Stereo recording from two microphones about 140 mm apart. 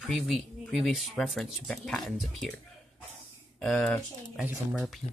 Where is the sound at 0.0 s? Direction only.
Centre (ahead or behind).